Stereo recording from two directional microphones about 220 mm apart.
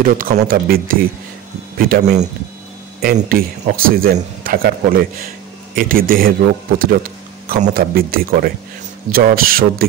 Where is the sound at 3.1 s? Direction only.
40° right (ahead or behind).